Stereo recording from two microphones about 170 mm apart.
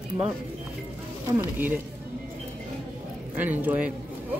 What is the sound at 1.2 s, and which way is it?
Speech, 15° right (ahead or behind).